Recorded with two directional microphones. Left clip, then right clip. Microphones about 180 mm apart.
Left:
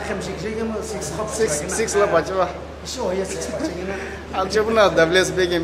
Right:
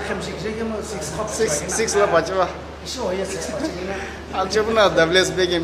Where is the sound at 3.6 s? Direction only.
10° left (ahead or behind).